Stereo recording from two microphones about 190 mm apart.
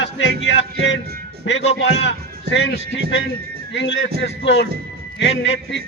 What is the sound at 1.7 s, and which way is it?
Speech, 65° left (ahead or behind).